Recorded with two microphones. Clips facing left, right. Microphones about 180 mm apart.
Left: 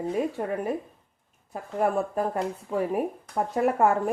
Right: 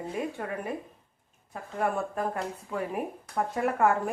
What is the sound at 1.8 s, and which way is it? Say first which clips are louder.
Speech: left 4 dB; 35° left (ahead or behind).